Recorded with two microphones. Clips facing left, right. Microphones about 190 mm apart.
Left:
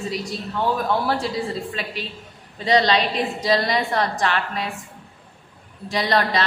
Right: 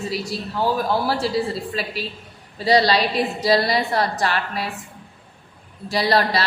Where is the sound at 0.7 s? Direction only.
35° right (ahead or behind).